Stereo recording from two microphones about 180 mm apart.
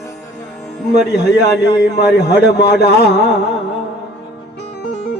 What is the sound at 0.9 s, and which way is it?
A man's voice, 65° left (ahead or behind).